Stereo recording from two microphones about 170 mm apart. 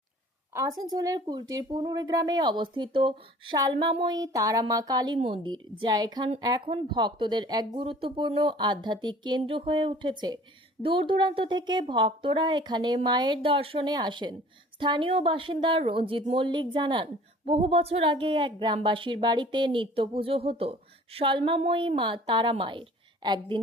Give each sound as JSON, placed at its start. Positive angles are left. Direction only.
{"t": 0.5, "sound": "speech", "side_deg": -20}